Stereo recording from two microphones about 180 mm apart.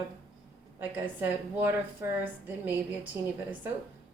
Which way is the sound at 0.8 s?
10° right (ahead or behind).